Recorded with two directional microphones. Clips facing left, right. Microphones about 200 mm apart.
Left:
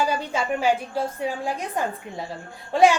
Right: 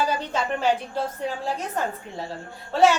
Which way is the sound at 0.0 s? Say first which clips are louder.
Left 1 dB; 10° left (ahead or behind).